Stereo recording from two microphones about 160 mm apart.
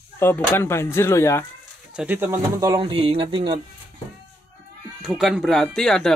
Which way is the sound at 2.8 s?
35° right (ahead or behind).